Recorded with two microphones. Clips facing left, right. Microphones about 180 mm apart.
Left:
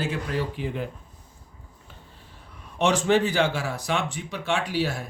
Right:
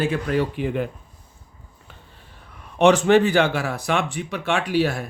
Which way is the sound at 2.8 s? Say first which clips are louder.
Right 6 dB; 60° right (ahead or behind).